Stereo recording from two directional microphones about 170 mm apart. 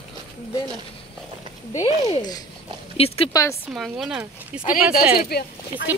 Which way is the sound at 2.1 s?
25° left (ahead or behind).